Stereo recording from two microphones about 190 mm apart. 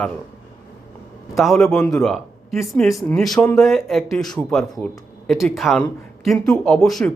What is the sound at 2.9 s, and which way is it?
Speech, 15° left (ahead or behind).